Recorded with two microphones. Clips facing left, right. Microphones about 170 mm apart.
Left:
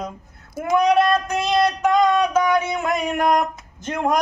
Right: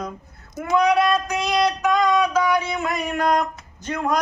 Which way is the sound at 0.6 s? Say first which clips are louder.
Left 3 dB; 10° left (ahead or behind).